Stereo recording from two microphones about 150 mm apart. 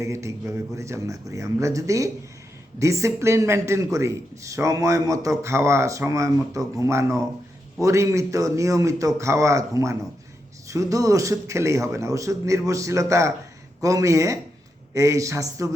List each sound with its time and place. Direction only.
0.0 s speech: 20° right (ahead or behind)